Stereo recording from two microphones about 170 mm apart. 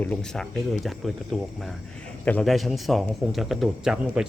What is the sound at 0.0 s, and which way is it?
Speech, 5° left (ahead or behind).